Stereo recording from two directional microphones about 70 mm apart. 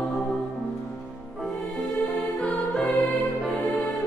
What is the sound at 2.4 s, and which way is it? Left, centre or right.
Music, centre.